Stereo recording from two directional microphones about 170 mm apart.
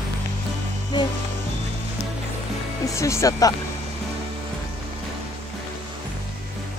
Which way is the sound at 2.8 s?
15° left (ahead or behind).